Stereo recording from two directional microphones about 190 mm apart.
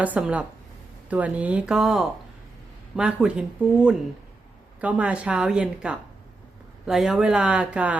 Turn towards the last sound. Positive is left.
turn(degrees=-5)  # may be behind; listen again after turning